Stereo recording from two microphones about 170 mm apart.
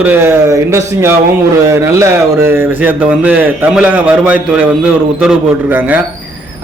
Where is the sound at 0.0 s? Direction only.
10° right (ahead or behind).